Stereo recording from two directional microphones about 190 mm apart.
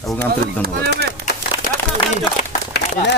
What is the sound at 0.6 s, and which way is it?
Speech, 55° right (ahead or behind).